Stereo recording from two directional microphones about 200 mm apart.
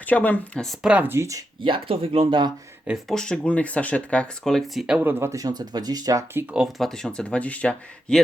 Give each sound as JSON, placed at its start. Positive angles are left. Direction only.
{"t": 0.0, "sound": "speech", "side_deg": 10}
{"t": 2.8, "sound": "speech", "side_deg": 0}
{"t": 6.5, "sound": "speech", "side_deg": 0}